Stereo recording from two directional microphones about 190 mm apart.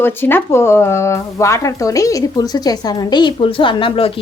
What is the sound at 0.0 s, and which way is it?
Speech, 10° left (ahead or behind).